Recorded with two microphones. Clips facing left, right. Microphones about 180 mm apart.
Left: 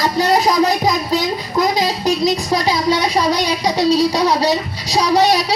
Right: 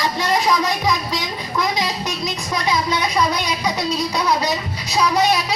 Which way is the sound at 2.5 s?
35° left (ahead or behind).